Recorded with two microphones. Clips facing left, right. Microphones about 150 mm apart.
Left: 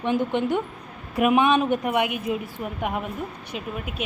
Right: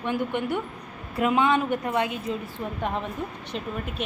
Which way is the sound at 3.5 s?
5° left (ahead or behind).